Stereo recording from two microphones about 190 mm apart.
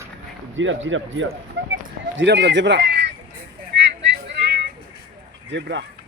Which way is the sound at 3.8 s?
65° right (ahead or behind).